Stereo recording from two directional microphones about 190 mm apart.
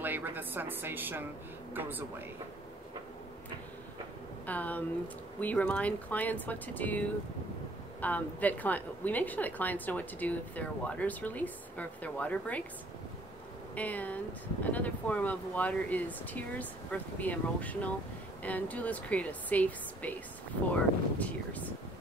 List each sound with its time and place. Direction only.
0.0 s a woman's voice: 10° right (ahead or behind)
4.5 s a woman's voice: 10° left (ahead or behind)
13.7 s a woman's voice: 10° left (ahead or behind)